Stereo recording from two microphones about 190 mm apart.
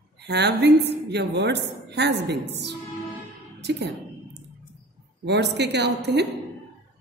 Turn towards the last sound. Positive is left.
turn(degrees=-60)  # may be behind; listen again after turning